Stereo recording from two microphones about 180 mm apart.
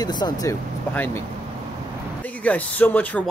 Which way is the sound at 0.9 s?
10° left (ahead or behind).